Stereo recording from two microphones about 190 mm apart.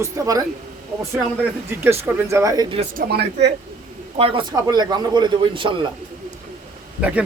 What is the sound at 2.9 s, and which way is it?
Speech, 55° right (ahead or behind).